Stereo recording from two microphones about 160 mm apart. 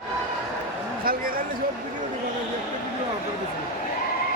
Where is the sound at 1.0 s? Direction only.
65° right (ahead or behind).